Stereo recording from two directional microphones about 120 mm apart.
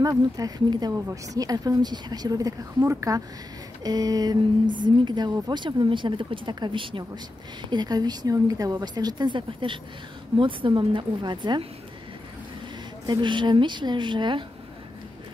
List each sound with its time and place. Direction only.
0.0 s a woman's voice: 30° right (ahead or behind)
13.0 s a woman's voice: 40° right (ahead or behind)